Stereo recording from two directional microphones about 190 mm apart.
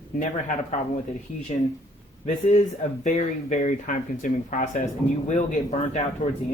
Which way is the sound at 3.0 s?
40° left (ahead or behind).